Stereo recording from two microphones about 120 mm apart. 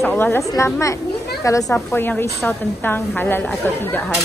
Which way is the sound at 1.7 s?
15° left (ahead or behind).